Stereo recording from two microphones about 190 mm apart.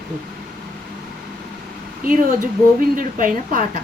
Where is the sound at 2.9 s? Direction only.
45° right (ahead or behind).